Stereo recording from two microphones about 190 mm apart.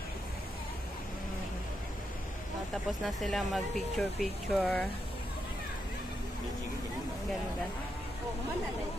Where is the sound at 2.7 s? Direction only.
Centre (ahead or behind).